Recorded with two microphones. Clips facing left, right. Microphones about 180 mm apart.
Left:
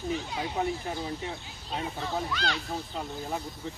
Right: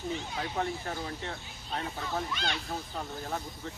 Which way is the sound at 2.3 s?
20° right (ahead or behind).